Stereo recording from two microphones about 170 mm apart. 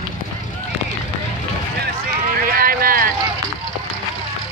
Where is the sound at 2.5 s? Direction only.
60° right (ahead or behind).